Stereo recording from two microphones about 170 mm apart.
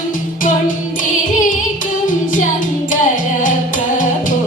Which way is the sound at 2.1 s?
50° left (ahead or behind).